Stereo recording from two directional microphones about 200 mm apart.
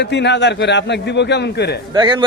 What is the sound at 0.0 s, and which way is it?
A man's voice, 60° left (ahead or behind).